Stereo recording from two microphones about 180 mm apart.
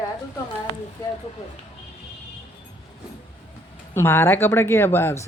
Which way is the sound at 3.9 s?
15° left (ahead or behind).